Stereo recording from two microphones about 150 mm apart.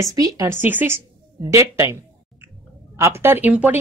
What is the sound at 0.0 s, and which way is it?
Speech, 25° right (ahead or behind).